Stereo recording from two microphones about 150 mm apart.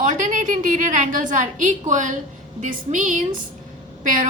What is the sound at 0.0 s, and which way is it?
A woman's voice, 55° right (ahead or behind).